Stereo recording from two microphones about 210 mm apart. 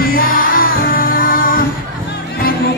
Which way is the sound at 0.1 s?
45° left (ahead or behind).